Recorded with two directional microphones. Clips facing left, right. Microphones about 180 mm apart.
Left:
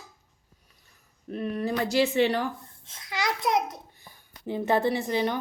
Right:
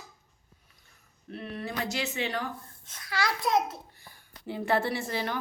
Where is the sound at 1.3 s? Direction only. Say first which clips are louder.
Left 7 dB; 40° left (ahead or behind).